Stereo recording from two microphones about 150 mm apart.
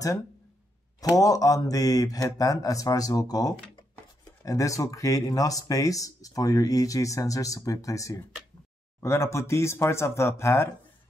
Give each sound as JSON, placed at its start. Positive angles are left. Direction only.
{"t": 1.0, "sound": "speech", "side_deg": 25}